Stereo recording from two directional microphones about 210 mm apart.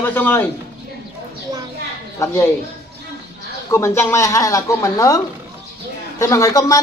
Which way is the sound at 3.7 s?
10° left (ahead or behind).